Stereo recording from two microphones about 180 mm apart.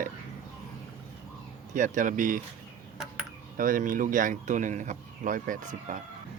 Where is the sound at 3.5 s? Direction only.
50° right (ahead or behind).